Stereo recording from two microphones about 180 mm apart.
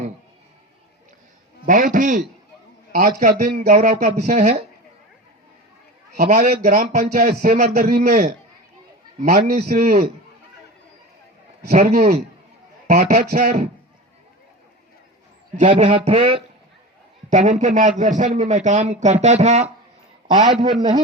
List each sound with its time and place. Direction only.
1.6 s a man's voice: 45° right (ahead or behind)
4.0 s a man's voice: 45° right (ahead or behind)
6.1 s a man's voice: 45° right (ahead or behind)
11.7 s a man's voice: 45° right (ahead or behind)
15.6 s speech: 30° right (ahead or behind)
17.2 s a man's voice: 40° right (ahead or behind)
20.3 s speech: 25° right (ahead or behind)